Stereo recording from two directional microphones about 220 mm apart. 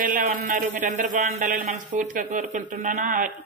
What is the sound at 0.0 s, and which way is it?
A woman's voice, 35° right (ahead or behind).